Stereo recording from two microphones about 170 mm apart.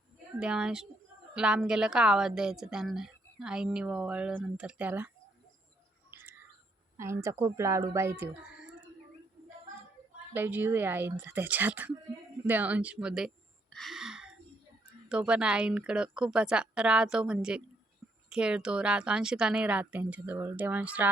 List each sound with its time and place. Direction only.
0.3 s a woman's voice: 5° right (ahead or behind)
6.1 s bird: 15° right (ahead or behind)
6.9 s a woman's voice: 15° right (ahead or behind)
10.3 s a woman's voice: 10° right (ahead or behind)